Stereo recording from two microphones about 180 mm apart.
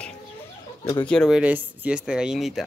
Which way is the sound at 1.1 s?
Centre (ahead or behind).